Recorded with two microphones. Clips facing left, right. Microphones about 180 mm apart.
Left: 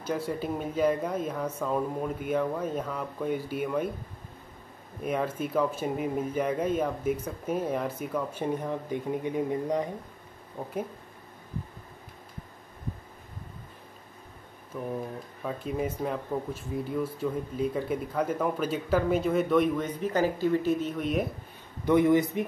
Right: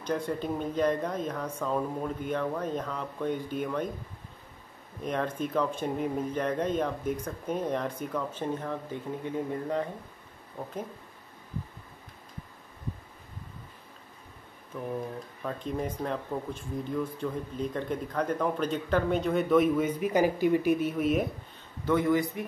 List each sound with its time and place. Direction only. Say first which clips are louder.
0.0 s speech: even; 5° left (ahead or behind)
5.0 s speech: left 1 dB; 5° left (ahead or behind)
15.4 s speech: left 2 dB; 5° left (ahead or behind)
21.8 s speech: left 4 dB; 20° left (ahead or behind)